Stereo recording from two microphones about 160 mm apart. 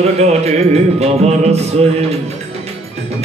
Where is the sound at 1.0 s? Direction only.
40° right (ahead or behind).